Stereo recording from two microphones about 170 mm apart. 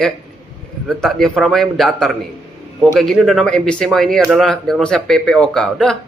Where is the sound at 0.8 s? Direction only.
Centre (ahead or behind).